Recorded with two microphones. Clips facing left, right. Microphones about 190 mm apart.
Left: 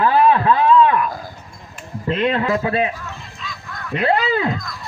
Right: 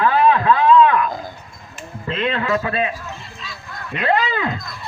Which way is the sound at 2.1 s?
35° left (ahead or behind).